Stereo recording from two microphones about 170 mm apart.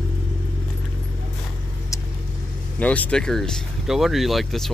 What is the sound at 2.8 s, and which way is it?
Speech, 10° left (ahead or behind).